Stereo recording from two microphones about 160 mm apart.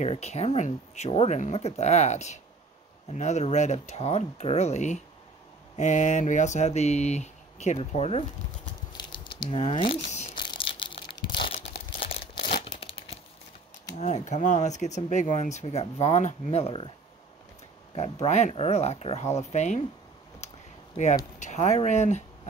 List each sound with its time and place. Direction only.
0.0 s speech: 45° left (ahead or behind)
8.9 s crumpling: 30° left (ahead or behind)
12.4 s crumpling: 60° left (ahead or behind)
12.7 s crumpling: 35° left (ahead or behind)
13.9 s speech: 45° left (ahead or behind)
17.9 s speech: 40° left (ahead or behind)
20.3 s a sound: 45° left (ahead or behind)
21.4 s speech: 45° left (ahead or behind)